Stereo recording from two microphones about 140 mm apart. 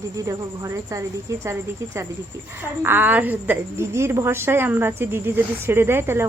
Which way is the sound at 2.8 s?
15° right (ahead or behind).